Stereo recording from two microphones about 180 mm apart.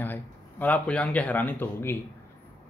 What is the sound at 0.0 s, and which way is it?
A man's voice, 10° left (ahead or behind).